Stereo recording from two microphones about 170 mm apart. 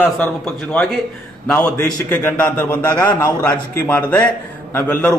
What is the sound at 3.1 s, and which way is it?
Speech, 20° left (ahead or behind).